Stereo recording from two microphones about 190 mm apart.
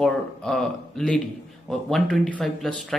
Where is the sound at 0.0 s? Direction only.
Centre (ahead or behind).